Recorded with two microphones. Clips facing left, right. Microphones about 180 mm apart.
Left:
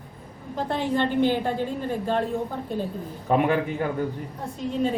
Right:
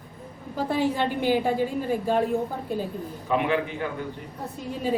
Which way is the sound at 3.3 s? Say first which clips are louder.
Left 3 dB; 45° left (ahead or behind).